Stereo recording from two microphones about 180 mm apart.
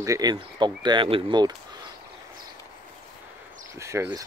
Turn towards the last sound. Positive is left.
turn(degrees=-15)  # may be behind; listen again after turning